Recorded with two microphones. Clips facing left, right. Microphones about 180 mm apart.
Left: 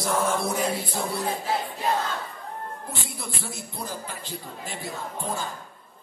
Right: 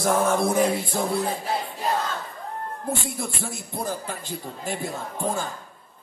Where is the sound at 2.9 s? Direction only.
50° right (ahead or behind).